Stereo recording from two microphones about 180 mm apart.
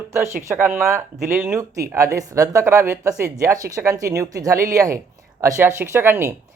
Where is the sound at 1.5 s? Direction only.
15° right (ahead or behind).